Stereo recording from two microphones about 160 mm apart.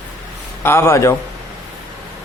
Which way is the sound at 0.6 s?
15° left (ahead or behind).